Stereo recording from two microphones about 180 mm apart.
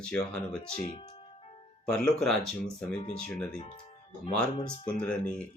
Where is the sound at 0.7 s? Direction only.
35° left (ahead or behind).